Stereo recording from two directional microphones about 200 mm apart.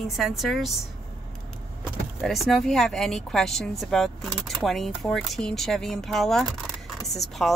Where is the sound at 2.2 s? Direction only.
Centre (ahead or behind).